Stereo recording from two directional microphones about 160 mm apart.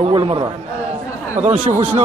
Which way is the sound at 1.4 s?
50° right (ahead or behind).